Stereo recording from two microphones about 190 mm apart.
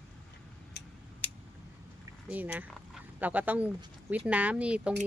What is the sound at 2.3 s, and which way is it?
A woman's voice, 10° right (ahead or behind).